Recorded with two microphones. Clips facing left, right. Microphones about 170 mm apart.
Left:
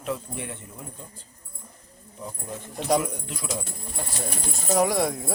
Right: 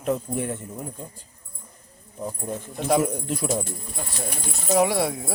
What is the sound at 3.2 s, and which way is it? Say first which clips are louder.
Speech: right 8 dB; 40° right (ahead or behind).